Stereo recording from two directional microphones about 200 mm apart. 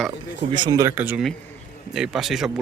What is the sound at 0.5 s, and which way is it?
Speech, 20° right (ahead or behind).